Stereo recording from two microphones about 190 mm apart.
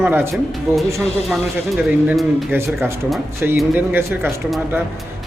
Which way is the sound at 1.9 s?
10° right (ahead or behind).